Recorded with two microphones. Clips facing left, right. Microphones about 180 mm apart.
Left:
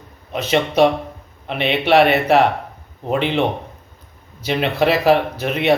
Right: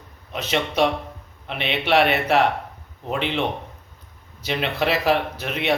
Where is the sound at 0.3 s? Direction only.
5° left (ahead or behind).